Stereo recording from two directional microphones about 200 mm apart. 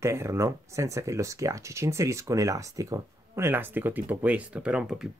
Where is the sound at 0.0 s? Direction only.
15° right (ahead or behind).